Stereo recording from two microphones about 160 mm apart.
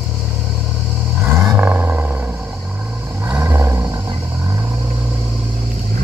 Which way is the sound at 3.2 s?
15° right (ahead or behind).